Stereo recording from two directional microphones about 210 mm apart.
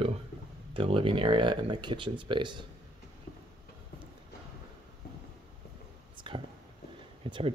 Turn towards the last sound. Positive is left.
turn(degrees=-25)  # may be behind; listen again after turning